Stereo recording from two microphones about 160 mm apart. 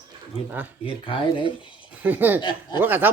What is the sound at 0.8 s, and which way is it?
Speech, 35° left (ahead or behind).